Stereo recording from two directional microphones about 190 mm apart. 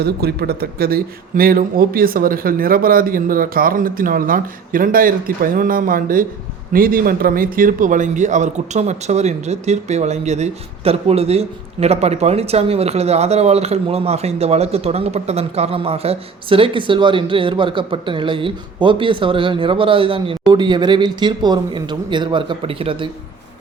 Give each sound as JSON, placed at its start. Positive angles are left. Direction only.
{"t": 0.0, "sound": "a man's voice", "side_deg": -55}